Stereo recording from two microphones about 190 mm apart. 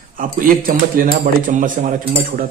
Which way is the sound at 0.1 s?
45° right (ahead or behind).